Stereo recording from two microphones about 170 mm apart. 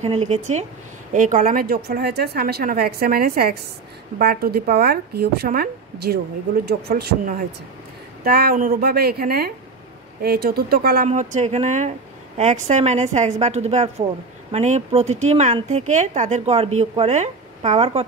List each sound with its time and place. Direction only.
0.0 s a woman's voice: 40° right (ahead or behind); by 11.1 s 65° right (ahead or behind)
11.1 s a woman's voice: 40° right (ahead or behind)